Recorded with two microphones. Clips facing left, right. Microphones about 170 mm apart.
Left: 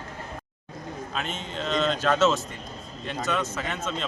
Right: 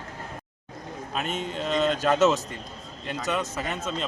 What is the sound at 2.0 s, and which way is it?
Speech, 15° right (ahead or behind).